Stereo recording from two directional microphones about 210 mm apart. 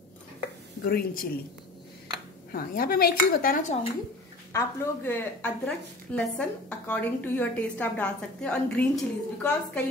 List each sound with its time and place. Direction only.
0.8 s speech: 45° left (ahead or behind)
2.5 s speech: 45° left (ahead or behind)
4.5 s a woman's voice: 10° left (ahead or behind)